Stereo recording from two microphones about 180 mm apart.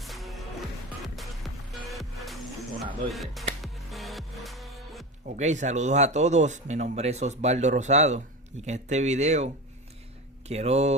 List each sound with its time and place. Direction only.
0.0 s music: centre (ahead or behind)
3.1 s speech: centre (ahead or behind)
3.6 s music: centre (ahead or behind)
5.2 s speech: 40° right (ahead or behind)
10.5 s speech: 35° right (ahead or behind)